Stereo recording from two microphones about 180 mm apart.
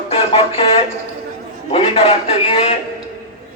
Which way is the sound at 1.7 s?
35° left (ahead or behind).